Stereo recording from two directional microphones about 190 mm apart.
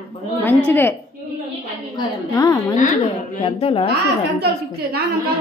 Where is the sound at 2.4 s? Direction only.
20° left (ahead or behind).